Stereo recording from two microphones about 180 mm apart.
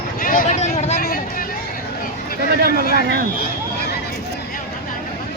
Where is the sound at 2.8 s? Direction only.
60° right (ahead or behind).